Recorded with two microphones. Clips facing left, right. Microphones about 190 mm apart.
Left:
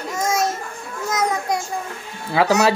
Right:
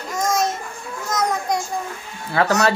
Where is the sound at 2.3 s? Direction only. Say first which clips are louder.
Left 2 dB; 10° left (ahead or behind).